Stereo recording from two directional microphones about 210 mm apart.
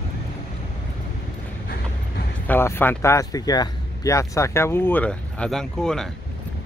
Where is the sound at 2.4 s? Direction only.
10° left (ahead or behind).